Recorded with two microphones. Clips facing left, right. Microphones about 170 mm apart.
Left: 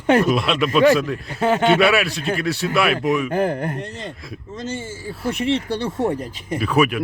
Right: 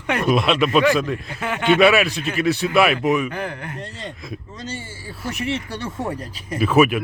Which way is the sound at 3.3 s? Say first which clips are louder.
Left 8 dB; 45° left (ahead or behind).